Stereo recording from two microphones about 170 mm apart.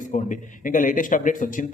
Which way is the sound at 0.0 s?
50° left (ahead or behind).